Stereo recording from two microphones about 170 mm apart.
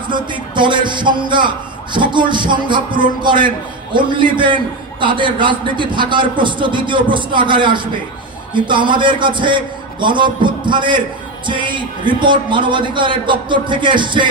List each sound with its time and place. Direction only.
0.1 s a man's voice: 30° right (ahead or behind)